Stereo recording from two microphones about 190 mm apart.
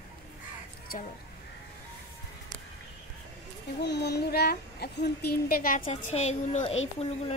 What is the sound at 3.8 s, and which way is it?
A woman's voice, 60° left (ahead or behind).